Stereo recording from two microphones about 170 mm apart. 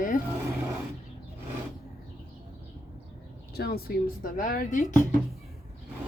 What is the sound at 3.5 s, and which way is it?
Speech, 65° left (ahead or behind).